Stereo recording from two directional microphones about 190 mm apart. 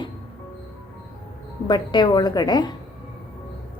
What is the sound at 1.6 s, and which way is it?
A woman's voice, 25° left (ahead or behind).